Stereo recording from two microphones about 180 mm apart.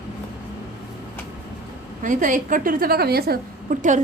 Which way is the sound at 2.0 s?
45° right (ahead or behind).